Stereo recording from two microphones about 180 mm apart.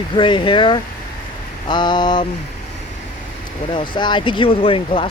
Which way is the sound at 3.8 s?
25° left (ahead or behind).